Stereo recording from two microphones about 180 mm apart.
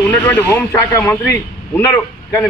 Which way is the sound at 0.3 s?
15° left (ahead or behind).